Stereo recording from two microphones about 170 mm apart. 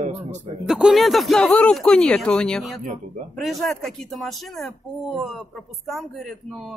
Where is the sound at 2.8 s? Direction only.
50° right (ahead or behind).